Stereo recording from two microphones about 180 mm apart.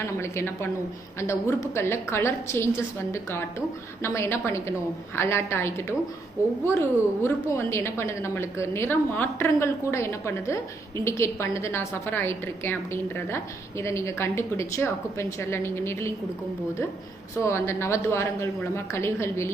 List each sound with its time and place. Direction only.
0.2 s a woman's voice: 15° left (ahead or behind)
17.4 s a woman's voice: 15° left (ahead or behind)